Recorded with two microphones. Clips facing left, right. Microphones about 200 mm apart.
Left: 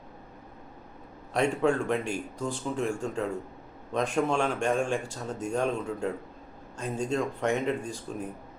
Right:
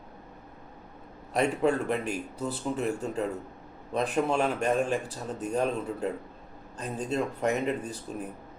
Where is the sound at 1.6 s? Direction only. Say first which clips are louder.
Even; 5° right (ahead or behind).